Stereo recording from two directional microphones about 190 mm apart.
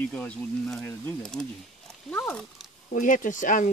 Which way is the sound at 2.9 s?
45° left (ahead or behind).